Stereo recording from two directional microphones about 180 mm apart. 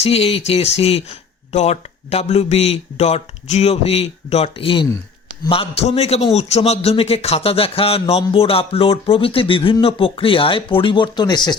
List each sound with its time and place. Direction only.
0.0 s a man's voice: 35° left (ahead or behind)